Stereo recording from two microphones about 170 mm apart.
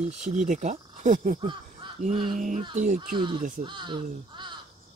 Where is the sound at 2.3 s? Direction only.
50° right (ahead or behind).